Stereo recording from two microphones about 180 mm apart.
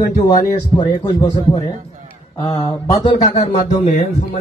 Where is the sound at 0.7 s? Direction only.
25° left (ahead or behind).